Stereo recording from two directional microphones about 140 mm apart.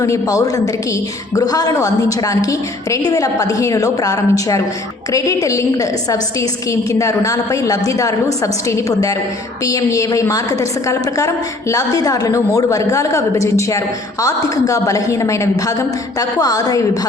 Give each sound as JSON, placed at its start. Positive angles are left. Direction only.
{"t": 0.0, "sound": "a woman's voice", "side_deg": 25}